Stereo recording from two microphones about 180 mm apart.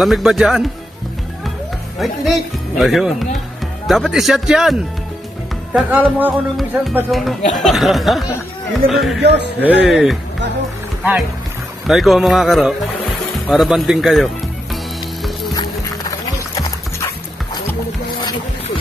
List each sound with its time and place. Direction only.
0.0 s speech: centre (ahead or behind)
2.0 s speech: centre (ahead or behind)
11.9 s speech: centre (ahead or behind)
15.5 s dog: 20° left (ahead or behind)